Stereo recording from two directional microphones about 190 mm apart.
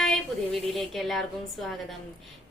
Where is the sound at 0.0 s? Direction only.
Centre (ahead or behind).